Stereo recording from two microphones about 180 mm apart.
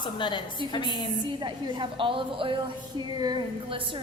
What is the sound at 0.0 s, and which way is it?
A woman's voice, 25° left (ahead or behind).